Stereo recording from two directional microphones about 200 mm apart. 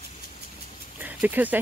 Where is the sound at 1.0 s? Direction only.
10° right (ahead or behind).